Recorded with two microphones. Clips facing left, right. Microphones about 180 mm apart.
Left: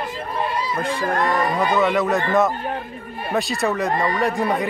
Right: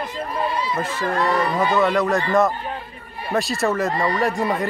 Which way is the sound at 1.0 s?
50° left (ahead or behind).